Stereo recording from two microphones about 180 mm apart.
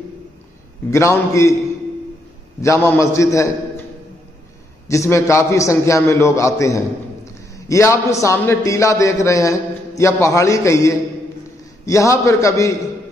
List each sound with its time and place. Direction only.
0.8 s a man's voice: 15° left (ahead or behind)
2.6 s a man's voice: 15° left (ahead or behind)
4.8 s a man's voice: 15° left (ahead or behind)